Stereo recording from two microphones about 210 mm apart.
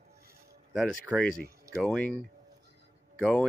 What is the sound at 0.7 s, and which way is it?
Speech, centre (ahead or behind).